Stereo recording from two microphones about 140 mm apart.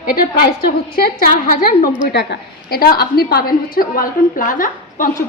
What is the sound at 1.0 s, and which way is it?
A woman's voice, 90° left.